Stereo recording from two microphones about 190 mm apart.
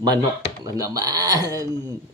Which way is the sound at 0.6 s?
20° right (ahead or behind).